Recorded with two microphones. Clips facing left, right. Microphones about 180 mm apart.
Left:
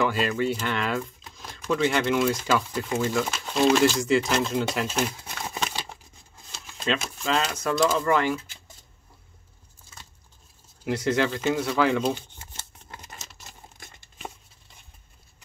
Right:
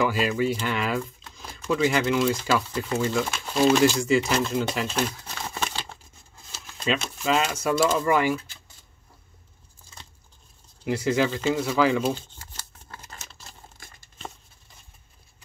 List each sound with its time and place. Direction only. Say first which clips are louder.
0.0 s speech: right 1 dB; 5° right (ahead or behind)
5.3 s a sound: even; centre (ahead or behind)
7.2 s speech: right 2 dB; 5° right (ahead or behind)
10.8 s speech: right 1 dB; centre (ahead or behind)
12.1 s crumpling: even; 20° left (ahead or behind)